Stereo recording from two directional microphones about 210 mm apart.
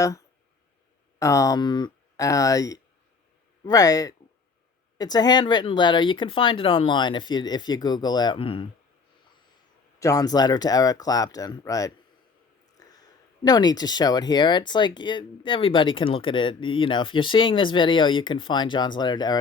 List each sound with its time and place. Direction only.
1.2 s speech: 15° left (ahead or behind)
10.0 s speech: 15° left (ahead or behind)
12.7 s a sound: 15° left (ahead or behind)
13.4 s speech: 20° left (ahead or behind)